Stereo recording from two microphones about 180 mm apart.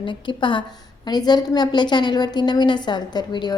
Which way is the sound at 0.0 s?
25° left (ahead or behind).